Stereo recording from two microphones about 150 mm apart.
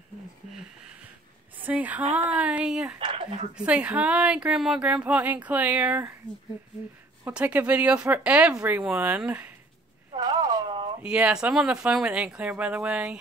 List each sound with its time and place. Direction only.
1.6 s a woman's voice: 10° right (ahead or behind)
3.0 s speech: 35° right (ahead or behind)
3.5 s speech: 10° right (ahead or behind)
7.2 s speech: 10° right (ahead or behind)
10.1 s a sound: 25° right (ahead or behind)
11.0 s speech: 10° right (ahead or behind)